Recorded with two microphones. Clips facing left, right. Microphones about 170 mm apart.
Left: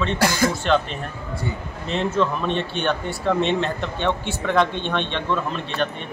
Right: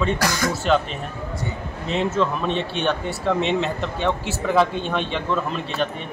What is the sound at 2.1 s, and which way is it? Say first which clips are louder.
Speech: even; centre (ahead or behind).